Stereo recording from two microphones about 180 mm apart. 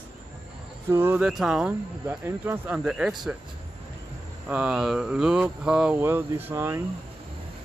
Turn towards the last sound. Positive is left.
turn(degrees=-15)  # may be behind; listen again after turning